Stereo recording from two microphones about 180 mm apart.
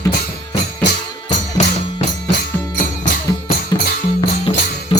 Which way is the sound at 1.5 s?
40° left (ahead or behind).